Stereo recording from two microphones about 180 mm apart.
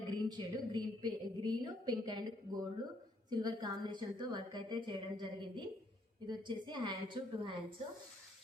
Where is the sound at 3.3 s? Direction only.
25° right (ahead or behind).